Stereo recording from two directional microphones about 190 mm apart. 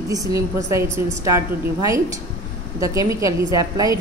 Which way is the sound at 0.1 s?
20° right (ahead or behind).